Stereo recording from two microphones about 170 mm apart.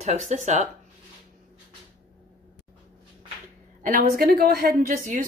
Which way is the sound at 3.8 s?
50° right (ahead or behind).